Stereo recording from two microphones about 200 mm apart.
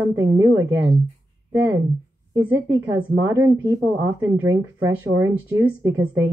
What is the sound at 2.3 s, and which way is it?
A woman's voice, 15° right (ahead or behind).